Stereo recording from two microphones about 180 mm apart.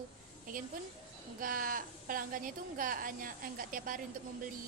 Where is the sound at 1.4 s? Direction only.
50° right (ahead or behind).